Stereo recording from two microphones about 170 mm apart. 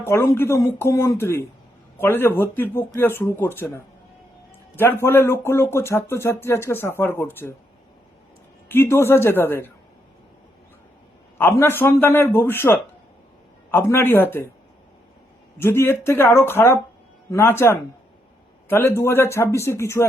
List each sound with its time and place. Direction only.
0.0 s speech: 15° left (ahead or behind)
8.7 s speech: 15° left (ahead or behind)
11.3 s speech: 15° left (ahead or behind)
15.5 s speech: 15° left (ahead or behind)